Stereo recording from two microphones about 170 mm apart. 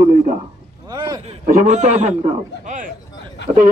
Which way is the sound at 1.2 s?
40° right (ahead or behind).